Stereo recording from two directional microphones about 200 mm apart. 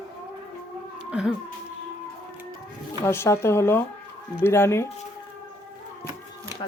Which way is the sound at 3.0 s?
15° left (ahead or behind).